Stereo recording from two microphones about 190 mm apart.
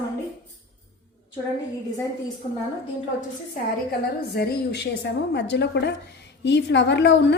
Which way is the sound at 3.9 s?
55° left (ahead or behind).